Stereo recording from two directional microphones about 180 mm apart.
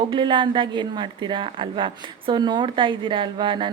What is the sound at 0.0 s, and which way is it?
A woman's voice, 25° right (ahead or behind).